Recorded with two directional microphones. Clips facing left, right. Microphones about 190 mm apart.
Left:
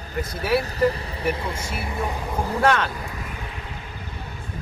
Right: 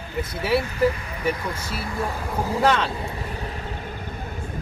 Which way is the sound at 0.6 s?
35° left (ahead or behind).